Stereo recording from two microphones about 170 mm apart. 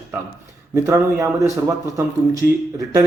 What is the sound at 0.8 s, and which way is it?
Speech, 15° right (ahead or behind).